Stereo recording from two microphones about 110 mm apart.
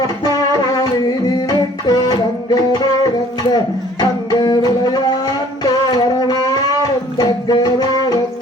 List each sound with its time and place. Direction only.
1.5 s music: 40° left (ahead or behind)
4.3 s music: 40° left (ahead or behind)
5.6 s a sound: 35° left (ahead or behind)
7.2 s music: 35° left (ahead or behind)